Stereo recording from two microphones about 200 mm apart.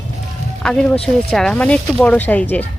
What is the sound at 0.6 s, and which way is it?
Speech, 5° left (ahead or behind).